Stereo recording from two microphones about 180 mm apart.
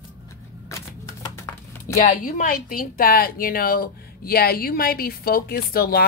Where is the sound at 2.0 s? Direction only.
45° left (ahead or behind).